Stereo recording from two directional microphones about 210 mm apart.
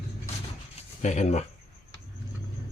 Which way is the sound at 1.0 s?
35° left (ahead or behind).